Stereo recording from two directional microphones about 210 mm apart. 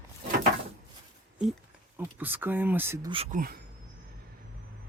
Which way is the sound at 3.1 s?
30° right (ahead or behind).